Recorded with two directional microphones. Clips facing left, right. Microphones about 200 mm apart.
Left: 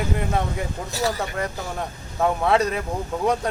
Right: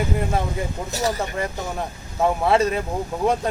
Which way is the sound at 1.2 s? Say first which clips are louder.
Right 1 dB; centre (ahead or behind).